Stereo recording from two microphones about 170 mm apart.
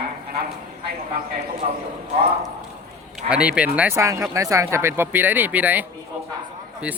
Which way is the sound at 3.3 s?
5° right (ahead or behind).